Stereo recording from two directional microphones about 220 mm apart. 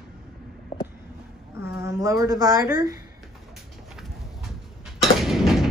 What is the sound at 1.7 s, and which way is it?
Speech, 15° right (ahead or behind).